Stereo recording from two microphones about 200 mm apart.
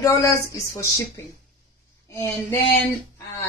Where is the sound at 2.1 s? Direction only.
15° left (ahead or behind).